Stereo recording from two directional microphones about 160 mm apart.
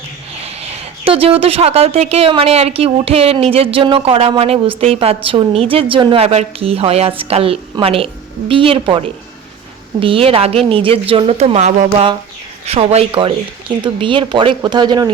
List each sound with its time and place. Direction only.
0.4 s a woman's voice: 35° right (ahead or behind)